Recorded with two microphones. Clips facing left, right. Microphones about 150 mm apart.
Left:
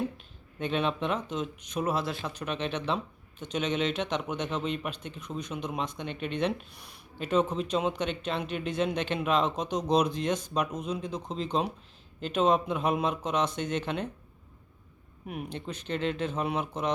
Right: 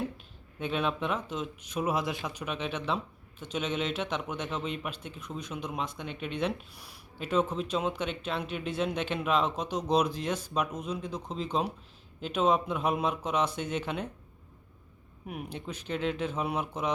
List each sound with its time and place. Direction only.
0.6 s speech: 5° right (ahead or behind)
15.3 s speech: 5° right (ahead or behind)